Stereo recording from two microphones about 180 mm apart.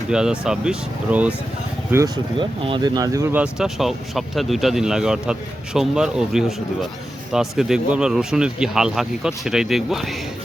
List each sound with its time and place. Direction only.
0.1 s speech: 5° right (ahead or behind)
2.4 s speech: 25° right (ahead or behind)
3.4 s speech: centre (ahead or behind)